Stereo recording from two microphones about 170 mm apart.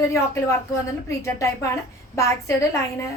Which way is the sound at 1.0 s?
20° left (ahead or behind).